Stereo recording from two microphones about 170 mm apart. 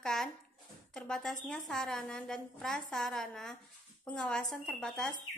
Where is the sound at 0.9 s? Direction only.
5° left (ahead or behind).